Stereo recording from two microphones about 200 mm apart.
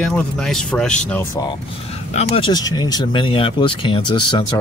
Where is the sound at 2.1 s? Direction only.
25° left (ahead or behind).